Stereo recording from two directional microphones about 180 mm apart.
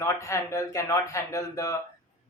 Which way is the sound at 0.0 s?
15° left (ahead or behind).